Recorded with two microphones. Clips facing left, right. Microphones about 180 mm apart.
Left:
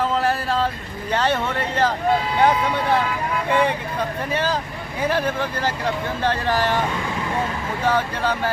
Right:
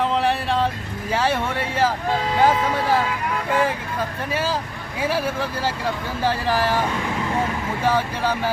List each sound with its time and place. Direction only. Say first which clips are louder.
0.0 s vehicle: even; centre (ahead or behind)
1.1 s speech: left 1 dB; 10° right (ahead or behind)
4.9 s speech: left 1 dB; 5° right (ahead or behind)
7.9 s speech: even; 10° right (ahead or behind)